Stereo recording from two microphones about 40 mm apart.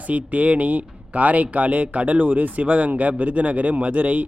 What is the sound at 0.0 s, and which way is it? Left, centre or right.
Speech, right.